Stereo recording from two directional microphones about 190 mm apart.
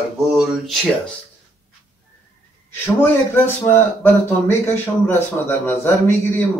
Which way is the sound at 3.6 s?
10° left (ahead or behind).